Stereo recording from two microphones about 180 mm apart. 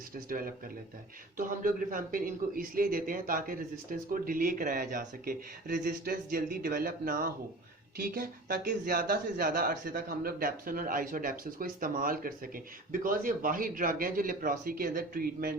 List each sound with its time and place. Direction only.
0.3 s a man's voice: 50° right (ahead or behind)